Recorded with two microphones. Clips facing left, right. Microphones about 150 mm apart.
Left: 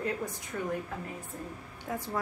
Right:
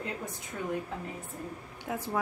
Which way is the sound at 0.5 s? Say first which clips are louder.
Left 2 dB; 15° right (ahead or behind).